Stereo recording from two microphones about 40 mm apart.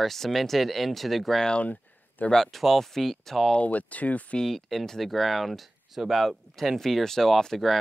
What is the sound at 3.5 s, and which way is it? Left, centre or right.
Speech, left.